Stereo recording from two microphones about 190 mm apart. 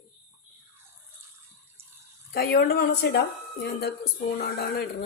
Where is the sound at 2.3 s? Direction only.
55° left (ahead or behind).